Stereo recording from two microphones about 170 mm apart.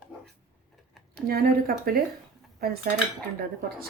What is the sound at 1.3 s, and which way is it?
Speech, 60° right (ahead or behind).